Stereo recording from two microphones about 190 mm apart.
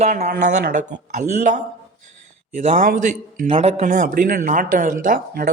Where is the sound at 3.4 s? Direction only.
30° right (ahead or behind); by 5.5 s 50° right (ahead or behind).